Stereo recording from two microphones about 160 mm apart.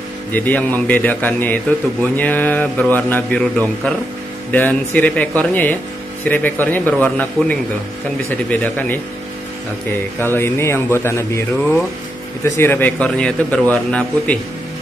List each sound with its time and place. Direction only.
0.3 s a man's voice: 10° left (ahead or behind)
10.2 s a man's voice: 15° left (ahead or behind)